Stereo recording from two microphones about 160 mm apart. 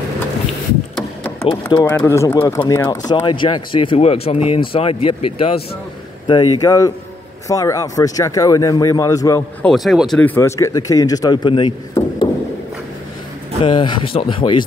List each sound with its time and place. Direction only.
1.4 s speech: 30° left (ahead or behind)
1.8 s speech: 20° left (ahead or behind)
9.6 s speech: centre (ahead or behind); by 12.3 s 30° left (ahead or behind)
13.6 s speech: 30° left (ahead or behind)